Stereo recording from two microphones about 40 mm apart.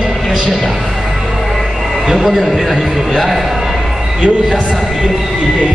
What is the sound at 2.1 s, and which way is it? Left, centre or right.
A man's voice, centre.